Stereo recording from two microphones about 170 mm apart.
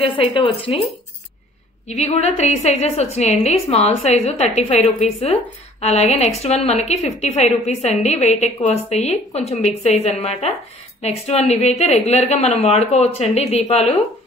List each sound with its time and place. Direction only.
0.0 s a woman's voice: 30° left (ahead or behind)
1.9 s a woman's voice: 40° left (ahead or behind)